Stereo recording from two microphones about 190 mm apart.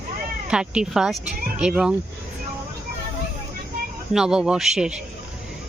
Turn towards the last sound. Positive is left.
turn(degrees=-5)  # may be behind; listen again after turning